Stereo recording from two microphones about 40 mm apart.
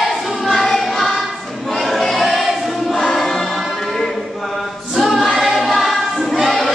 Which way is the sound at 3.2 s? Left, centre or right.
Centre.